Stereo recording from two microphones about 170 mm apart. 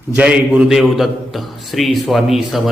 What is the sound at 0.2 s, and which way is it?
A man's voice, 5° right (ahead or behind).